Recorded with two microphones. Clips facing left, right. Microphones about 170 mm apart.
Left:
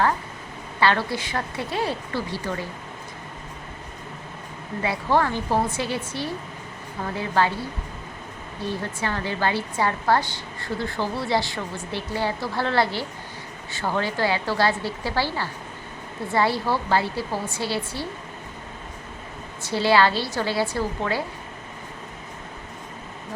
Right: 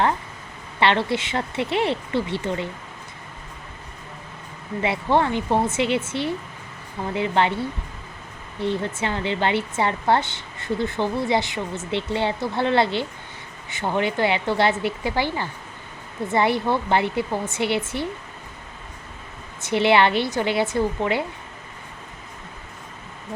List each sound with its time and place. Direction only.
0.8 s speech: 25° right (ahead or behind)
4.8 s speech: 25° right (ahead or behind)
8.6 s speech: 25° right (ahead or behind)
19.6 s speech: 20° right (ahead or behind)